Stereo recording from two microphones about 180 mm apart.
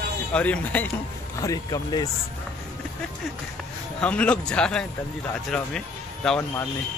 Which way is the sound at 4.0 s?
5° left (ahead or behind).